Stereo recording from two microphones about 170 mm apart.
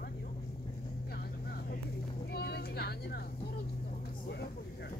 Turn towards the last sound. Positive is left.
turn(degrees=70)  # may be behind; listen again after turning